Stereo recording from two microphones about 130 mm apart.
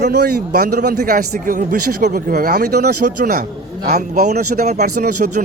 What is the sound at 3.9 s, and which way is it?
Speech, 65° right (ahead or behind).